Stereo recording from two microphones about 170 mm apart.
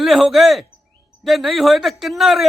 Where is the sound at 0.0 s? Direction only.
Centre (ahead or behind).